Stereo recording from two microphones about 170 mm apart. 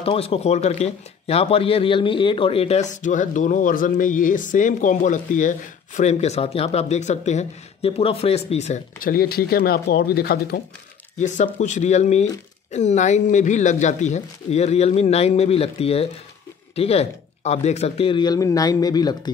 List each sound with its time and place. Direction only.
0.0 s speech: 35° left (ahead or behind)
9.1 s speech: 60° left (ahead or behind)
11.1 s speech: 45° left (ahead or behind); by 19.3 s 25° left (ahead or behind)